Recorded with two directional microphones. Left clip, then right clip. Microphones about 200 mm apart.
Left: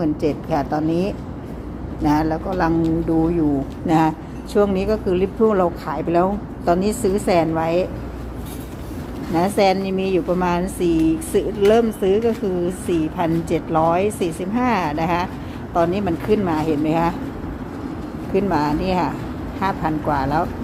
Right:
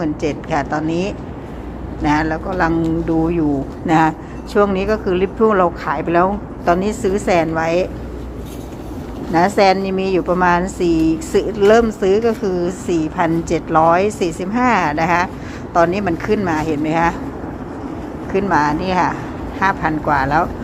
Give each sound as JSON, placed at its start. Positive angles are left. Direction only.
{"t": 0.0, "sound": "a woman's voice", "side_deg": 5}
{"t": 9.3, "sound": "a woman's voice", "side_deg": -5}
{"t": 10.8, "sound": "a woman's voice", "side_deg": -40}
{"t": 11.3, "sound": "a woman's voice", "side_deg": -10}
{"t": 18.3, "sound": "a woman's voice", "side_deg": 0}